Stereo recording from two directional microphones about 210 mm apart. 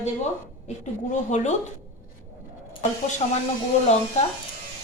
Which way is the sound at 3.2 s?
30° left (ahead or behind).